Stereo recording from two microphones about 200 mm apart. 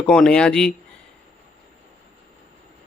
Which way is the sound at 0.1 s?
5° left (ahead or behind).